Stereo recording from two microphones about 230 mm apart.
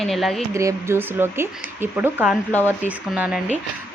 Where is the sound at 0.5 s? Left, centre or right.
Centre.